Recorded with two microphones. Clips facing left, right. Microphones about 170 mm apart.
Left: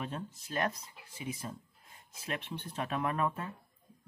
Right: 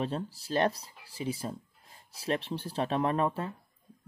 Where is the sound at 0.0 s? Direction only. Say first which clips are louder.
Right 7 dB; 35° right (ahead or behind).